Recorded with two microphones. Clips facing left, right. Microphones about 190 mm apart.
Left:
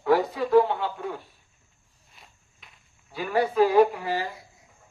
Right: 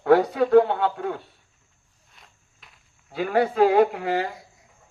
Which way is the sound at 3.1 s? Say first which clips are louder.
Right 2 dB; 60° right (ahead or behind).